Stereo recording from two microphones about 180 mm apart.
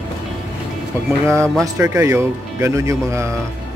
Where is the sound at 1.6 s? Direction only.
15° right (ahead or behind).